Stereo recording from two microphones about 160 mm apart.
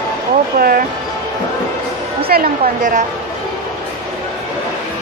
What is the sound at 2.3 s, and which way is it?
Speech, 60° right (ahead or behind).